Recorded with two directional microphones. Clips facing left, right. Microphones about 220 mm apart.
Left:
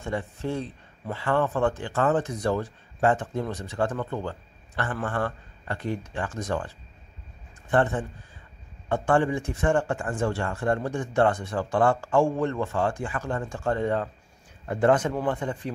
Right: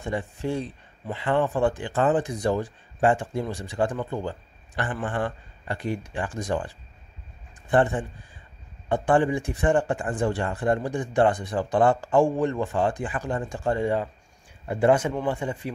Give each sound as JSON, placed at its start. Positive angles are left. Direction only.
{"t": 0.0, "sound": "speech", "side_deg": -15}
{"t": 7.7, "sound": "speech", "side_deg": -15}